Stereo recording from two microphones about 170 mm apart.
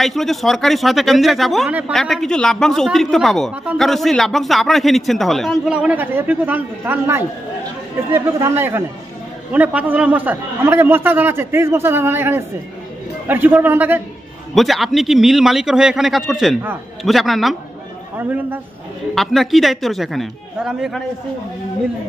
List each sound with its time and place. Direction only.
0.0 s a man's voice: centre (ahead or behind)
14.5 s a man's voice: centre (ahead or behind)
18.1 s a man's voice: 10° right (ahead or behind)
19.1 s a man's voice: centre (ahead or behind)